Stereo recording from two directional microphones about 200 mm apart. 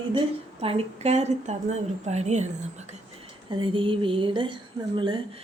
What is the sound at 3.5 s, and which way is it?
Speech, 25° right (ahead or behind).